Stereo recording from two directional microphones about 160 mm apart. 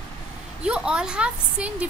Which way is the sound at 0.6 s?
5° right (ahead or behind).